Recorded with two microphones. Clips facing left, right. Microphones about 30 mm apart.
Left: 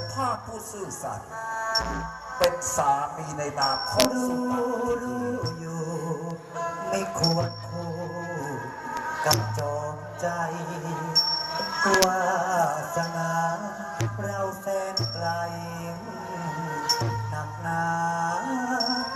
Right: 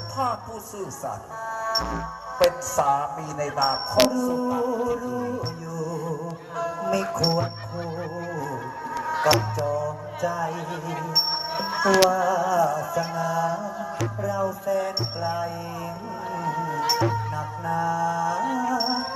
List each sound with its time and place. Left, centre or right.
0.2 s music: centre